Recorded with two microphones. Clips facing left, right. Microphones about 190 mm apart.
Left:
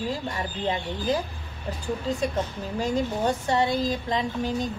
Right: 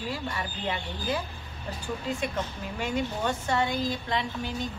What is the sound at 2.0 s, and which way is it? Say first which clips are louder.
Speech: left 4 dB; 35° left (ahead or behind).